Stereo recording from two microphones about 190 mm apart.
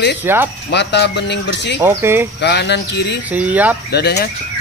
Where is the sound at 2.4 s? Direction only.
60° left (ahead or behind).